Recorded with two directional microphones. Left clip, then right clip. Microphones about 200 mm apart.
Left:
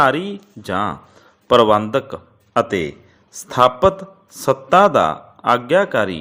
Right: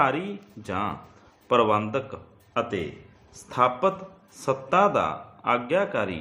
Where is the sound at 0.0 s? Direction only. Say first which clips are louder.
Left 8 dB; 35° left (ahead or behind).